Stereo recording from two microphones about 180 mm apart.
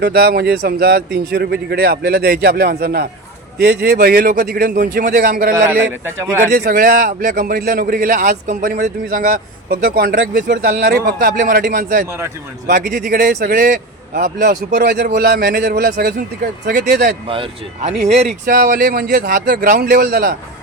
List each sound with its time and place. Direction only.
0.0 s a man's voice: 65° right (ahead or behind)
5.5 s a man's voice: 15° right (ahead or behind)
6.4 s a man's voice: 55° right (ahead or behind)
17.2 s speech: 30° right (ahead or behind)
18.4 s a man's voice: 50° right (ahead or behind)